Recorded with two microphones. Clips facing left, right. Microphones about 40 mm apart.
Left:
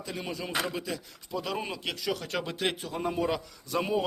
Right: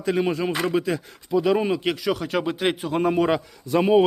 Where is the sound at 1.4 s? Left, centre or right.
Right.